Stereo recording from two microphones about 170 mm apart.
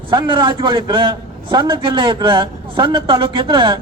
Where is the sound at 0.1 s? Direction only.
30° right (ahead or behind).